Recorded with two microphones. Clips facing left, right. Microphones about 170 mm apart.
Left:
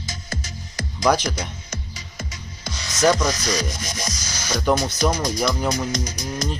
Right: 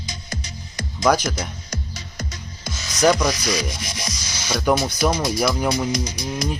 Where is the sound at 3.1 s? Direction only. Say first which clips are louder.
Right 1 dB; 10° right (ahead or behind).